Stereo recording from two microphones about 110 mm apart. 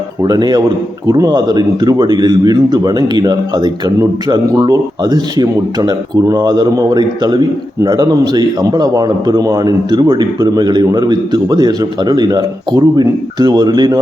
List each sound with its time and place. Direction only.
0.2 s a man's voice: 40° right (ahead or behind)